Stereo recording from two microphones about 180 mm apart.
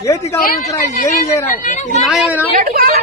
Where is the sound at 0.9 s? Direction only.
45° left (ahead or behind).